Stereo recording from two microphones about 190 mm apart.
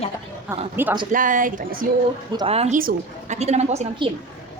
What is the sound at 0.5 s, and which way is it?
Speech, 10° right (ahead or behind).